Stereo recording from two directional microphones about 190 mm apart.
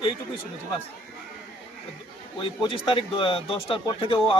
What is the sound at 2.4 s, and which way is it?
Speech, 25° left (ahead or behind).